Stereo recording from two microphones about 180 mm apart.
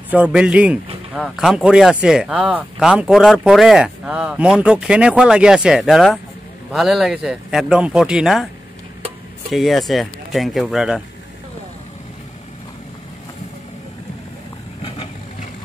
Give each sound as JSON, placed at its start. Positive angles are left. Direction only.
{"t": 0.1, "sound": "a man's voice", "side_deg": -5}
{"t": 9.5, "sound": "speech", "side_deg": 0}
{"t": 14.8, "sound": "vehicle", "side_deg": 30}